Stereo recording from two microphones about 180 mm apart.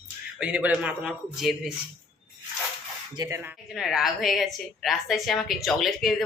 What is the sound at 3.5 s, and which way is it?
A woman's voice, centre (ahead or behind).